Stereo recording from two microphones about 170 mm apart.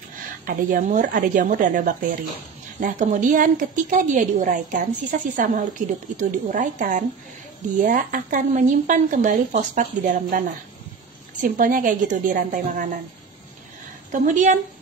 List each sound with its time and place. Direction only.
0.5 s a woman's voice: 55° right (ahead or behind)
11.4 s a woman's voice: 55° right (ahead or behind)
14.1 s a woman's voice: 45° right (ahead or behind)